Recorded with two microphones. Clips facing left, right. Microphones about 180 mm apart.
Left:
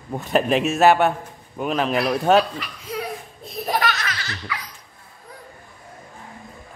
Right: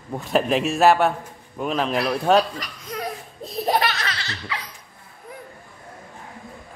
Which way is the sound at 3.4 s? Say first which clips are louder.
Right 2 dB; 30° right (ahead or behind).